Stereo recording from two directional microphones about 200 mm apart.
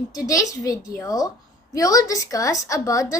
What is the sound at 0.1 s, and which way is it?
A woman's voice, 15° left (ahead or behind).